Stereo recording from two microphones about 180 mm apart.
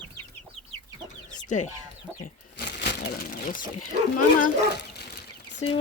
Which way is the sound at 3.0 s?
50° left (ahead or behind).